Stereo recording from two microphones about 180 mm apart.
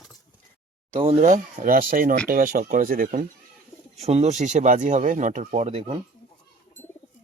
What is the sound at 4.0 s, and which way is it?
Speech, 35° right (ahead or behind).